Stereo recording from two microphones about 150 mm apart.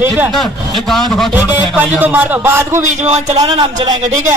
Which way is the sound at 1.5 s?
10° right (ahead or behind).